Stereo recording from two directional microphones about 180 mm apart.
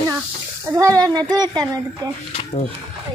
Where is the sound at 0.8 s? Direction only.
20° right (ahead or behind).